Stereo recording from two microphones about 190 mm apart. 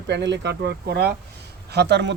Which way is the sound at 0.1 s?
65° right (ahead or behind).